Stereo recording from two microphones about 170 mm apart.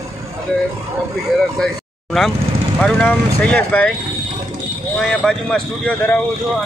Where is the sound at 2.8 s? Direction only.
10° left (ahead or behind).